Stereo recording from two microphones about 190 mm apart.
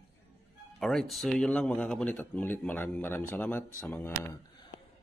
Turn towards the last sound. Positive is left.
turn(degrees=10)  # may be behind; listen again after turning